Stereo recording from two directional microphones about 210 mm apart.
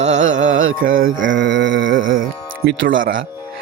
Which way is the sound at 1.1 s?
65° right (ahead or behind).